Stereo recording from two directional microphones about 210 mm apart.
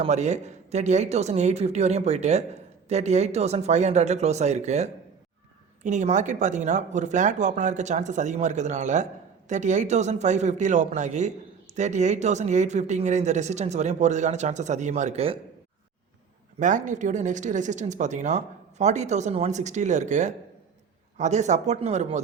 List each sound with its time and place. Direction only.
0.0 s speech: 35° right (ahead or behind)
16.6 s speech: 35° right (ahead or behind)